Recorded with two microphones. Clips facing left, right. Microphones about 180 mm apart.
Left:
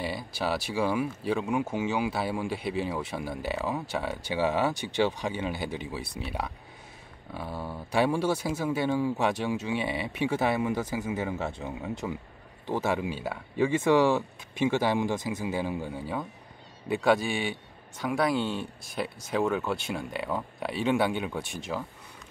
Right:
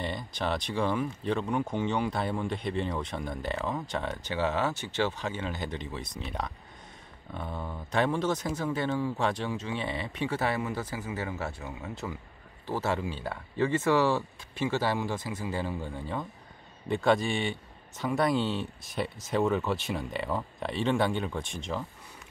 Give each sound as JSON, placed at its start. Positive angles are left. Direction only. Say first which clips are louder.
{"t": 0.0, "sound": "speech", "louder": "left 1 dB", "side_deg": 5}